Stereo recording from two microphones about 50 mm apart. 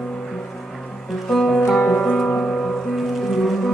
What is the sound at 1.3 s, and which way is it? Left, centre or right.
Music, centre.